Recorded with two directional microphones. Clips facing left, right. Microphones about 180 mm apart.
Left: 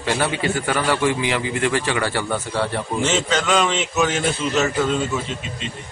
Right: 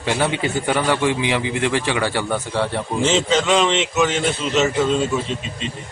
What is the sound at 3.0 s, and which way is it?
Speech, 30° right (ahead or behind).